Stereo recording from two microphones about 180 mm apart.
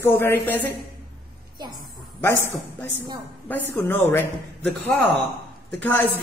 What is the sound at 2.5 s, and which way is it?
A man's voice, 10° left (ahead or behind).